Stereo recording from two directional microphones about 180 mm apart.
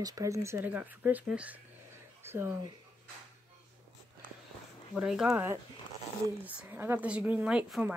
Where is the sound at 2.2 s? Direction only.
15° right (ahead or behind).